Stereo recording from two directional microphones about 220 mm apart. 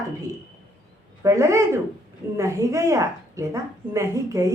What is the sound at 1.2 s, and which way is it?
Speech, 15° right (ahead or behind).